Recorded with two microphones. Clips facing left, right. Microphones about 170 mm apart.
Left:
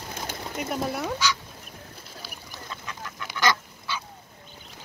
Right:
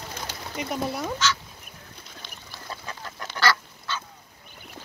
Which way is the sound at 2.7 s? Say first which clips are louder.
Right 2 dB; 35° right (ahead or behind).